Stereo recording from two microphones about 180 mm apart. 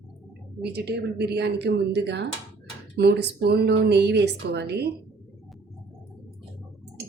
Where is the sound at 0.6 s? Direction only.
65° right (ahead or behind).